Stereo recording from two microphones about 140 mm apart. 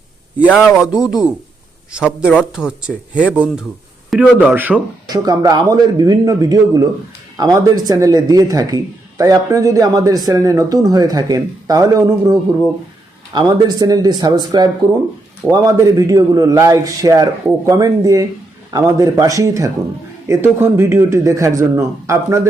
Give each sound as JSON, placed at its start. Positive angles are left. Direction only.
{"t": 0.5, "sound": "speech", "side_deg": -5}
{"t": 5.0, "sound": "a man's voice", "side_deg": -30}